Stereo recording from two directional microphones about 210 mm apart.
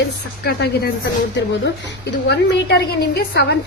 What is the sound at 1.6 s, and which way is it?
A woman's voice, 55° left (ahead or behind).